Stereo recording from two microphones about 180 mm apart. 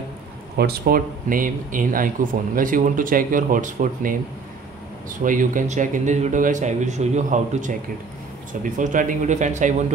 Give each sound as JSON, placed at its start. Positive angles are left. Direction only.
{"t": 0.6, "sound": "speech", "side_deg": -60}
{"t": 5.2, "sound": "speech", "side_deg": -45}